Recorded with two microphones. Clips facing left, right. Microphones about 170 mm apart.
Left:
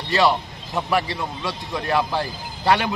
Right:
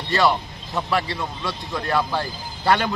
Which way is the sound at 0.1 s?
15° left (ahead or behind).